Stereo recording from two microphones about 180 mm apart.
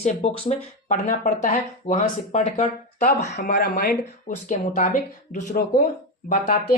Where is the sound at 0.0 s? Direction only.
35° left (ahead or behind).